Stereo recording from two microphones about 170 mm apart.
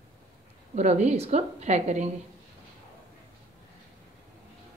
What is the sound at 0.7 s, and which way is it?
A woman's voice, 45° right (ahead or behind).